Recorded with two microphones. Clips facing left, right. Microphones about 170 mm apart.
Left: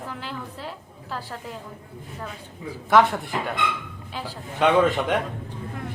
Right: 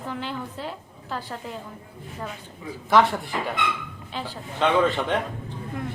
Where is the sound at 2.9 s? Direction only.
Centre (ahead or behind).